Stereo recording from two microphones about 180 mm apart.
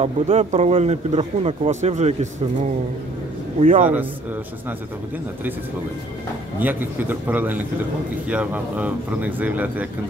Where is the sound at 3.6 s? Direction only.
45° right (ahead or behind).